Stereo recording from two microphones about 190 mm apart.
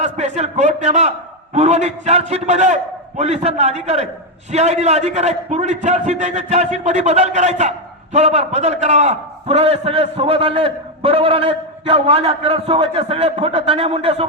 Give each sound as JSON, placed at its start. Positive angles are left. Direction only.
{"t": 0.0, "sound": "a man's voice", "side_deg": -35}